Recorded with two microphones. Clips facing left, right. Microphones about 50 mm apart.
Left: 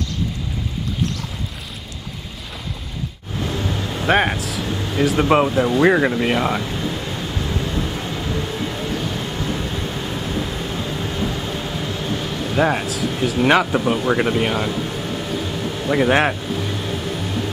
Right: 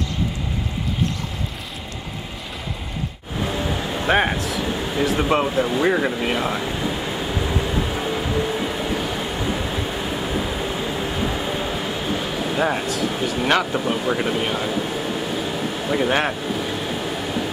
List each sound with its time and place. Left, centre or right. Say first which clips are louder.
3.3 s vehicle: even; centre
4.1 s speech: left 2 dB; centre
5.9 s speech: left 4 dB; centre
6.1 s speech: left 3 dB; centre
6.6 s vehicle: right 1 dB; centre
12.5 s speech: left 4 dB; centre
14.7 s air conditioning: right 1 dB; centre
15.9 s speech: left 4 dB; centre
16.4 s vehicle: even; centre